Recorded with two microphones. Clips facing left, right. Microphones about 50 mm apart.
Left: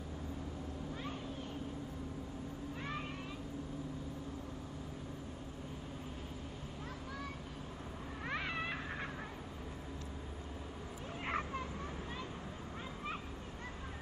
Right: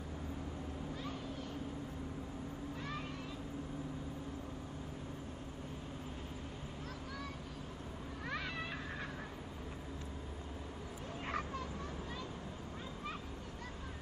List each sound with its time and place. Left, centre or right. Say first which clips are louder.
8.3 s cat: left 3 dB; left
11.2 s vehicle: left 2 dB; left